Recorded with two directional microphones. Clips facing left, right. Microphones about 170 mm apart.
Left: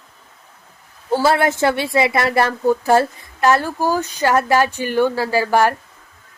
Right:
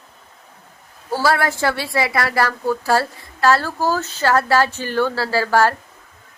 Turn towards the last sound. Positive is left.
turn(degrees=15)  # may be behind; listen again after turning